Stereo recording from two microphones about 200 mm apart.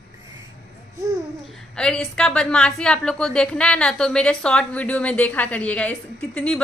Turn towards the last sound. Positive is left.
turn(degrees=5)  # may be behind; listen again after turning